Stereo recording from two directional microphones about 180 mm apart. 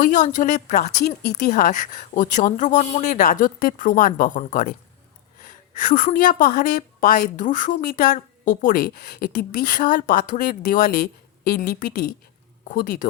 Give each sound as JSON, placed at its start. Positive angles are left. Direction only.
{"t": 0.0, "sound": "a woman's voice", "side_deg": 45}
{"t": 5.4, "sound": "a woman's voice", "side_deg": 50}